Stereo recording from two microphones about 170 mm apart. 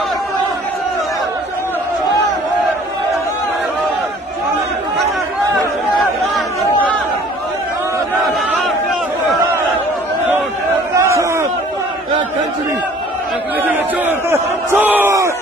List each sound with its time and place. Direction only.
8.2 s a sound: centre (ahead or behind)
11.0 s crowd: 15° right (ahead or behind)
13.6 s chatter: 10° right (ahead or behind)
14.3 s crowd: 15° right (ahead or behind)